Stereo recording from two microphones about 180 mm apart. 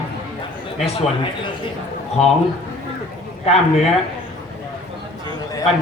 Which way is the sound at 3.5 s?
35° left (ahead or behind).